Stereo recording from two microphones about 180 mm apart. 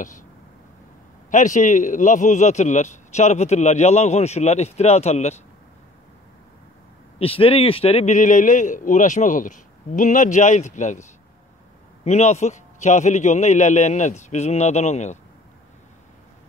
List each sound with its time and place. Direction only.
1.3 s a man's voice: 45° left (ahead or behind)
7.2 s a man's voice: 30° left (ahead or behind)